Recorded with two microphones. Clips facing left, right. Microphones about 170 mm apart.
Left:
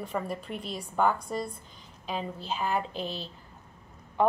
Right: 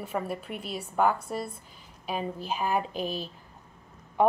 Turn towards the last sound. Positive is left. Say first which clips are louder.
# right 3 dB
turn(degrees=-10)  # may be behind; listen again after turning